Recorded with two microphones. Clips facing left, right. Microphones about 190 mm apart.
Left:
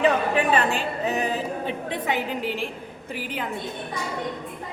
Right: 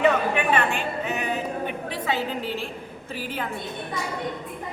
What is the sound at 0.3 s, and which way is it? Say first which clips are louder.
A woman's voice: left 2 dB; 35° left (ahead or behind).